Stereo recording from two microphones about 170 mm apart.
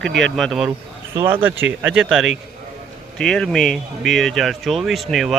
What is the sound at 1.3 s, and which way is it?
Speech, 10° right (ahead or behind).